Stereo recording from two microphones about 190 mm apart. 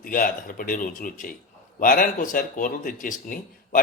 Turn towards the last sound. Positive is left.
turn(degrees=45)  # may be behind; listen again after turning